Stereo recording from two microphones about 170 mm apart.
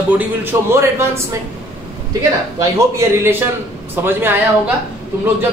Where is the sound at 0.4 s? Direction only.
15° right (ahead or behind).